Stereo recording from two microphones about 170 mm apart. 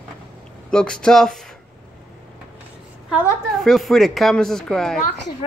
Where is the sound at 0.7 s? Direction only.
5° left (ahead or behind).